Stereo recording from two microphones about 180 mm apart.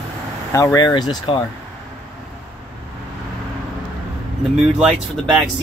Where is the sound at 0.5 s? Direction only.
15° left (ahead or behind).